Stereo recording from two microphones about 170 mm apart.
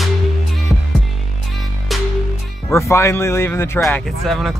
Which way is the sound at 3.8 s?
Centre (ahead or behind).